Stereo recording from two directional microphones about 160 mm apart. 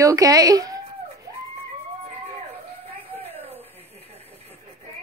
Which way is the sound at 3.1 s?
40° right (ahead or behind).